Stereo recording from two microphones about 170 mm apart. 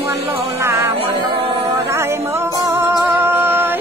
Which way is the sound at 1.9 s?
15° right (ahead or behind).